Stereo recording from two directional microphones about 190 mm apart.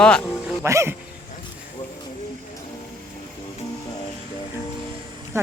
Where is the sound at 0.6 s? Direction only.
15° right (ahead or behind).